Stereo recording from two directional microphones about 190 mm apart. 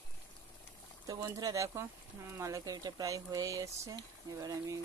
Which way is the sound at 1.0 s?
20° right (ahead or behind).